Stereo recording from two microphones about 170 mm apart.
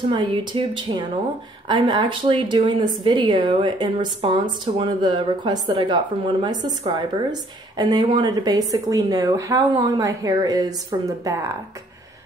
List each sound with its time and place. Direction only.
0.1 s a woman's voice: 30° right (ahead or behind)